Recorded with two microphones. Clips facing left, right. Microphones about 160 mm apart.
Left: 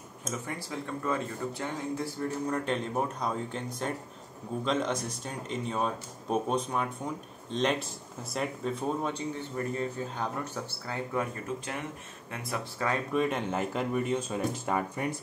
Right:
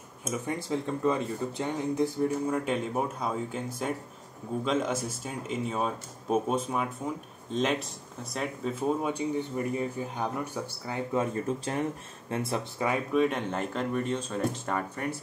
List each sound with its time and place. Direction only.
0.5 s speech: 20° right (ahead or behind)
2.4 s speech: 5° right (ahead or behind)
11.1 s speech: 35° right (ahead or behind)
13.1 s speech: centre (ahead or behind)